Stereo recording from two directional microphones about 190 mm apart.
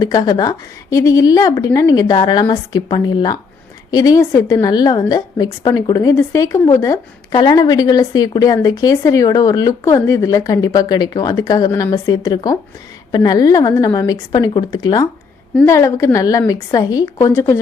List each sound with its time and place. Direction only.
0.0 s a woman's voice: 20° left (ahead or behind)